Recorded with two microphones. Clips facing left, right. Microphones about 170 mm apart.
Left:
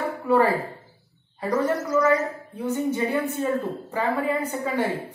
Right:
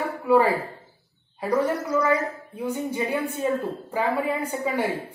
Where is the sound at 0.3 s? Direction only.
10° right (ahead or behind).